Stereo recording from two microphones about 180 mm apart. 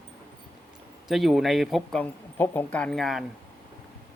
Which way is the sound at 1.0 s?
Centre (ahead or behind).